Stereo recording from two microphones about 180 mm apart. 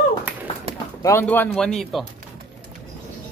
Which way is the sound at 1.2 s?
10° left (ahead or behind).